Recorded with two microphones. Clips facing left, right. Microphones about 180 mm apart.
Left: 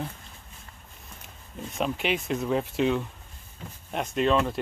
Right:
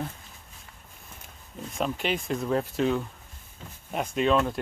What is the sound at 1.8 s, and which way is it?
Speech, centre (ahead or behind).